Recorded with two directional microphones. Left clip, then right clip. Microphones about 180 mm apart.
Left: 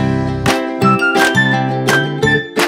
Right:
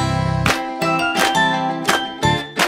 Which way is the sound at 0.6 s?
Centre (ahead or behind).